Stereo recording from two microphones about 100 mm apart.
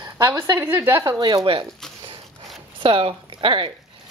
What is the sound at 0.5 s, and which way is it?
Speech, 20° right (ahead or behind).